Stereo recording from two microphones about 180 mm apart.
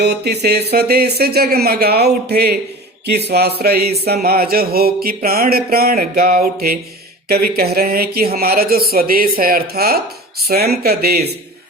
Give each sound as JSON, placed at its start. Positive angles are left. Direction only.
{"t": 0.0, "sound": "speech", "side_deg": -65}